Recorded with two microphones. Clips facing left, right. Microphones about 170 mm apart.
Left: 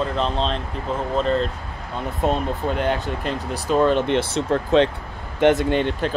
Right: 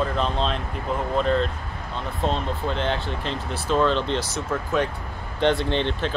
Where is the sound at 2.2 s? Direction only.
10° left (ahead or behind).